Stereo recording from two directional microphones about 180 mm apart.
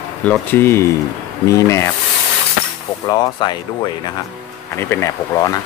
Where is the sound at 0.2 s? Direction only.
10° left (ahead or behind).